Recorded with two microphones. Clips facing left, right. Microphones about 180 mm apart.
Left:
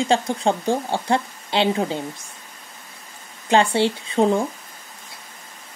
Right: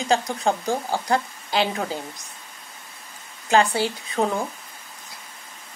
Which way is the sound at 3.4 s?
25° left (ahead or behind).